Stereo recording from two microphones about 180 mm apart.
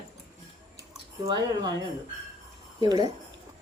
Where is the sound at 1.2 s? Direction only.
20° right (ahead or behind).